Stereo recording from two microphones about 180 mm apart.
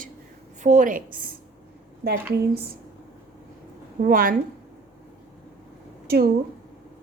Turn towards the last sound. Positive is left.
turn(degrees=-60)  # may be behind; listen again after turning